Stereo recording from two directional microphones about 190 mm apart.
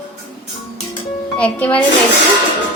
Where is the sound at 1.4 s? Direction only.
5° left (ahead or behind).